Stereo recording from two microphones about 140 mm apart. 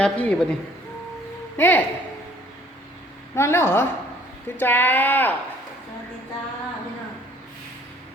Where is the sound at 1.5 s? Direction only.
15° left (ahead or behind).